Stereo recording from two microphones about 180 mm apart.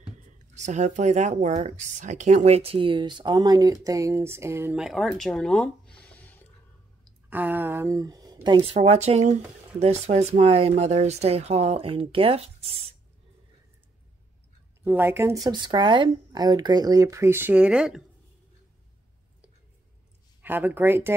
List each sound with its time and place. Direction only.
0.6 s speech: 40° right (ahead or behind); by 6.4 s 10° left (ahead or behind)
7.2 s speech: 10° right (ahead or behind); by 12.9 s 35° right (ahead or behind)
14.8 s speech: 10° right (ahead or behind)
20.4 s speech: 10° right (ahead or behind)